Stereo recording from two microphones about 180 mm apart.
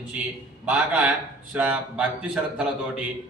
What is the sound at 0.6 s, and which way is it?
A man's voice, 5° right (ahead or behind).